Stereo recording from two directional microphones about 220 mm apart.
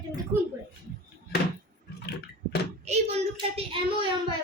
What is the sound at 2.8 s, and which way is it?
A child's voice, 30° right (ahead or behind).